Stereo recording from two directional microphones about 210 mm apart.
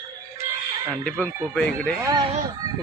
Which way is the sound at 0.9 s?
5° left (ahead or behind).